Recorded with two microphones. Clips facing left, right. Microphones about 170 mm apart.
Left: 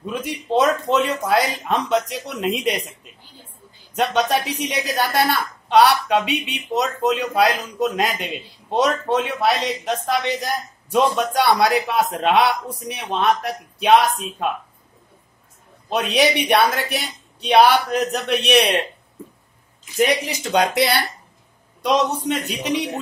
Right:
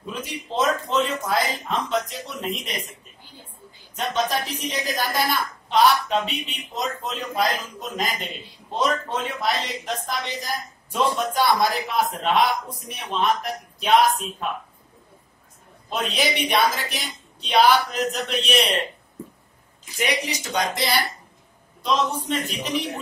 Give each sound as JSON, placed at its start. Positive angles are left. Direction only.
{"t": 0.2, "sound": "a woman's voice", "side_deg": 60}
{"t": 3.9, "sound": "a woman's voice", "side_deg": 70}
{"t": 15.9, "sound": "a woman's voice", "side_deg": 65}
{"t": 20.2, "sound": "a woman's voice", "side_deg": 65}